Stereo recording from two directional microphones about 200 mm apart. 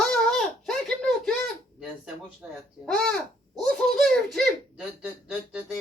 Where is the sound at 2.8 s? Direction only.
5° left (ahead or behind).